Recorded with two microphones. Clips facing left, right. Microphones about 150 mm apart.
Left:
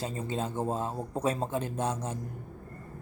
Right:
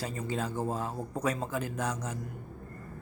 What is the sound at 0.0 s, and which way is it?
Speech, 25° left (ahead or behind).